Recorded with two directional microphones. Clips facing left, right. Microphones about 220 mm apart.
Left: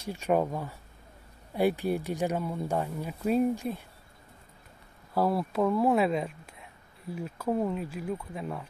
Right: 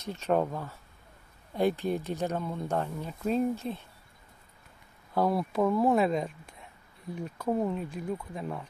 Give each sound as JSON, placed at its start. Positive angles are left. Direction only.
{"t": 0.0, "sound": "speech", "side_deg": 10}
{"t": 5.1, "sound": "speech", "side_deg": 5}